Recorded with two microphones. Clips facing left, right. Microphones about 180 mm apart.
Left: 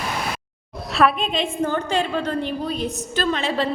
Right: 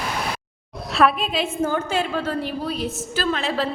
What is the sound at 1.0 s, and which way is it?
A woman's voice, 5° right (ahead or behind).